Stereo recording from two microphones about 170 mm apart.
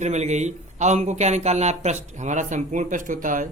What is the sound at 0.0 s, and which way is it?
Speech, 45° right (ahead or behind).